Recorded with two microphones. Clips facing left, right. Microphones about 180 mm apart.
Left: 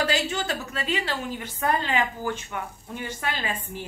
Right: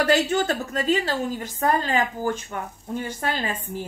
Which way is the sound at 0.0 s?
55° right (ahead or behind).